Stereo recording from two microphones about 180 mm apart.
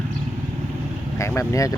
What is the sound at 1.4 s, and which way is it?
Speech, 20° left (ahead or behind).